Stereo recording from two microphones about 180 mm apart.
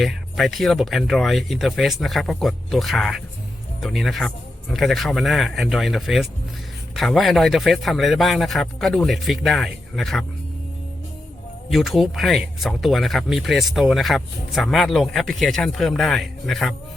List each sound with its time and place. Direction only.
0.0 s speech: centre (ahead or behind)
11.7 s speech: centre (ahead or behind)